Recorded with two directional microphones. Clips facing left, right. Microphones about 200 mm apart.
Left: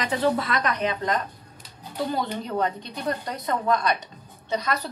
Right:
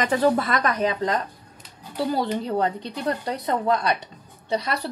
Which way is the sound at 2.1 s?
30° right (ahead or behind).